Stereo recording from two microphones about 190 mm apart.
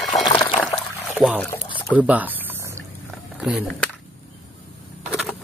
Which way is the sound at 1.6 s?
25° left (ahead or behind).